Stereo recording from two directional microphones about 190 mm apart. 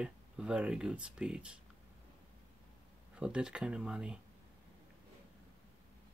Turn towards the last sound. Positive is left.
turn(degrees=-5)  # may be behind; listen again after turning